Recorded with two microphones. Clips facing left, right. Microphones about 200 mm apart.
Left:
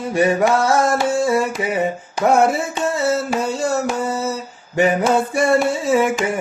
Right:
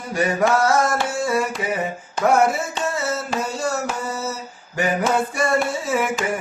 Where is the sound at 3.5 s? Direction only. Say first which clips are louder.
Left 3 dB; 25° left (ahead or behind).